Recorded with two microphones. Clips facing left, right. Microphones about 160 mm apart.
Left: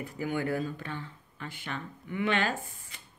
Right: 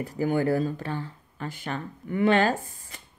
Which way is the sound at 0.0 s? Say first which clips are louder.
Right 7 dB; 35° right (ahead or behind).